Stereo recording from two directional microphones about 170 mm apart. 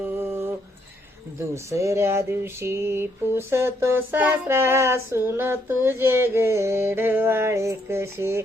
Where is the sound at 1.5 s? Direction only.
15° right (ahead or behind).